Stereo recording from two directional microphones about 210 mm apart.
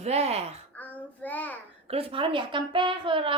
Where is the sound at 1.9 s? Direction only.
25° right (ahead or behind).